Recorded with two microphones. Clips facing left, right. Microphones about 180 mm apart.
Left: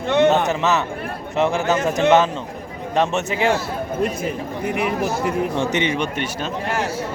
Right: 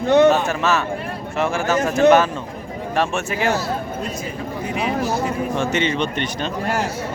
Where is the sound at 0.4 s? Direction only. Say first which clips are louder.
Even; 20° left (ahead or behind).